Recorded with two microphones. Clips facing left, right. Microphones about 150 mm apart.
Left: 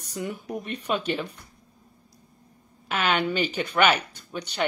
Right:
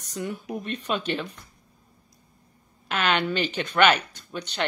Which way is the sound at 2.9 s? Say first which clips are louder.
Even; 10° left (ahead or behind).